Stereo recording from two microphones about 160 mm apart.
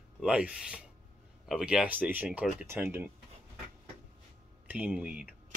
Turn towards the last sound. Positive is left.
turn(degrees=-5)  # may be behind; listen again after turning